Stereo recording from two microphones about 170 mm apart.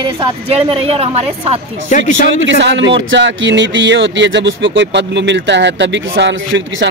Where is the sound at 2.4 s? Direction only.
90° right.